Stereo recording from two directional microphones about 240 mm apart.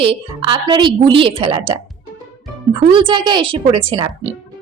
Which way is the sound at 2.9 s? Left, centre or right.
Right.